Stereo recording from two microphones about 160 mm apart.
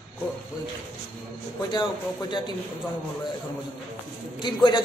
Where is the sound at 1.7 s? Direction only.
30° left (ahead or behind).